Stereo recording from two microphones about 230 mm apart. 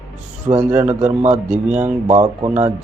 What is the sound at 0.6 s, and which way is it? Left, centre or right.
Speech, centre.